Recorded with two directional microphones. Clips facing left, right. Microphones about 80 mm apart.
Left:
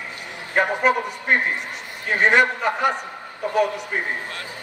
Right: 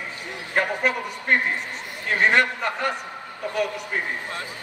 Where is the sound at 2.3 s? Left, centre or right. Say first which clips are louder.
Left 3 dB; centre.